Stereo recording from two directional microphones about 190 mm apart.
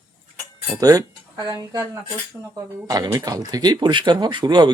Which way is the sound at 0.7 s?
20° right (ahead or behind).